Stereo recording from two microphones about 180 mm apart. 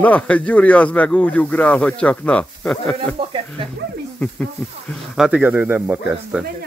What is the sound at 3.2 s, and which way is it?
Speech, 30° right (ahead or behind).